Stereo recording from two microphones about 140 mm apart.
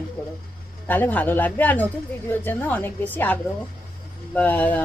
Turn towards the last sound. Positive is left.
turn(degrees=10)  # may be behind; listen again after turning